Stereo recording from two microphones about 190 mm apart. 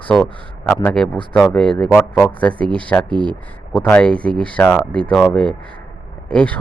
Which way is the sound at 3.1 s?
25° right (ahead or behind).